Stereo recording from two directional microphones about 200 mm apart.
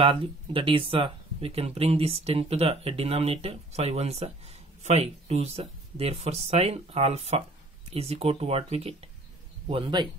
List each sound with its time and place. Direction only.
0.0 s speech: 25° right (ahead or behind)